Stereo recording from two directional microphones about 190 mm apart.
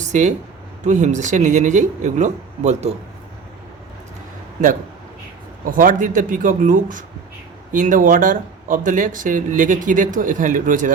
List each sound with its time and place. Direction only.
0.0 s speech: 40° right (ahead or behind)
5.7 s speech: 45° right (ahead or behind)